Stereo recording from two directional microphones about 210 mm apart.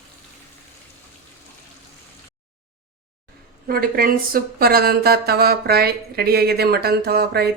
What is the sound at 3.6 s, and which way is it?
Speech, 45° right (ahead or behind).